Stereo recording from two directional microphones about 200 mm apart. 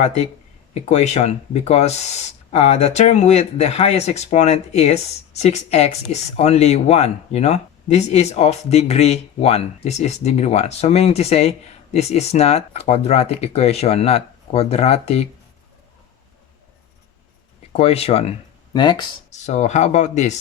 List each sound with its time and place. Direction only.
0.7 s speech: 35° left (ahead or behind)
17.7 s speech: 30° left (ahead or behind)
19.3 s speech: 35° left (ahead or behind)